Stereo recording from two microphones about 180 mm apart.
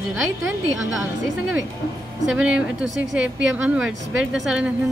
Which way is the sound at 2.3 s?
5° right (ahead or behind).